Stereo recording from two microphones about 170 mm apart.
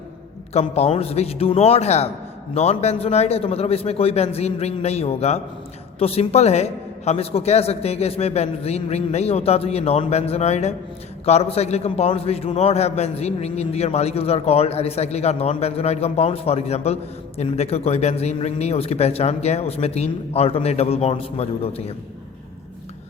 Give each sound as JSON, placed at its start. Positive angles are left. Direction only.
{"t": 0.5, "sound": "a man's voice", "side_deg": 35}